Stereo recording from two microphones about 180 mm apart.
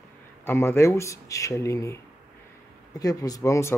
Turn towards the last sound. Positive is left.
turn(degrees=15)  # may be behind; listen again after turning